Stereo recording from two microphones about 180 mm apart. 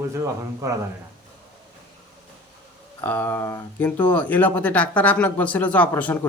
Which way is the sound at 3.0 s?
10° left (ahead or behind).